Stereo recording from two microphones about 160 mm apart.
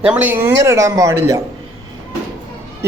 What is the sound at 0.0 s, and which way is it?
Speech, 10° right (ahead or behind).